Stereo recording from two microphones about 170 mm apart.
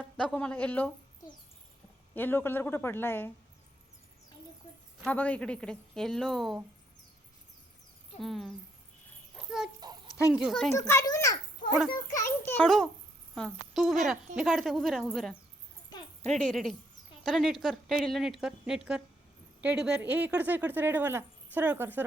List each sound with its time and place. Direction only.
0.2 s a woman's voice: 5° left (ahead or behind)
2.1 s a woman's voice: 10° left (ahead or behind)
5.0 s speech: 10° left (ahead or behind)
8.2 s speech: centre (ahead or behind)
9.3 s a sound: 5° right (ahead or behind)
10.3 s speech: centre (ahead or behind)
10.7 s a woman's voice: 15° left (ahead or behind)
12.6 s speech: centre (ahead or behind)
16.4 s speech: 5° left (ahead or behind)